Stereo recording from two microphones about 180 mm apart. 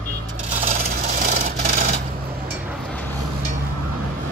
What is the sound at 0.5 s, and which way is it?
Rub, 40° right (ahead or behind).